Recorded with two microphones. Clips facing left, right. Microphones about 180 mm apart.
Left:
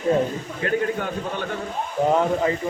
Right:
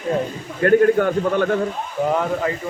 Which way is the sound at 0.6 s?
55° right (ahead or behind).